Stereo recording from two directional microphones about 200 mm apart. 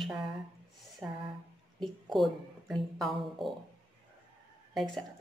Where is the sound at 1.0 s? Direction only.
10° right (ahead or behind).